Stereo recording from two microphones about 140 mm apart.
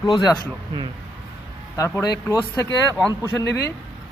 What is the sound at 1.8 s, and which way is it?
Speech, 20° left (ahead or behind).